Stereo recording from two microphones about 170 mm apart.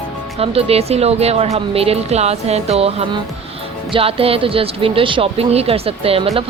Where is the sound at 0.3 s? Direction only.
35° right (ahead or behind).